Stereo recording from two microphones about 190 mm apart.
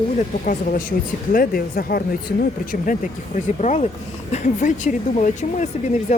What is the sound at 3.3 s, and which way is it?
Speech, 40° left (ahead or behind).